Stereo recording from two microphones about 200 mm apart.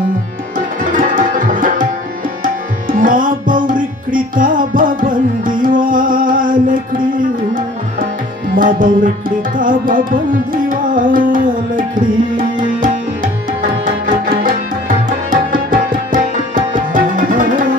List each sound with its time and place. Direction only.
0.9 s tabla: 40° right (ahead or behind)
2.4 s music: 45° right (ahead or behind)
8.5 s tabla: 45° right (ahead or behind)
15.2 s music: 45° right (ahead or behind)